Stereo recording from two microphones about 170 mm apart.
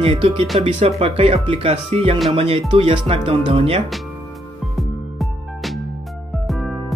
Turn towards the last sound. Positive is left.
turn(degrees=0)  # may be behind; listen again after turning